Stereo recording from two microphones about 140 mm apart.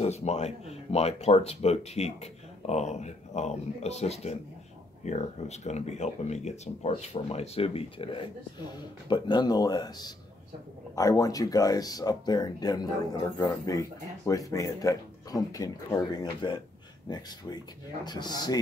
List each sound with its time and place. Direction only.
0.0 s speech: 50° left (ahead or behind); by 18.6 s 30° left (ahead or behind)